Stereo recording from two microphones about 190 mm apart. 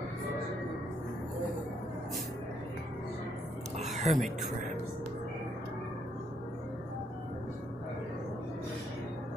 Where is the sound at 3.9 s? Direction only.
40° right (ahead or behind).